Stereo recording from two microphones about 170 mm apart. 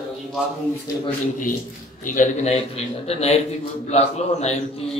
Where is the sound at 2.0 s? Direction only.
50° left (ahead or behind).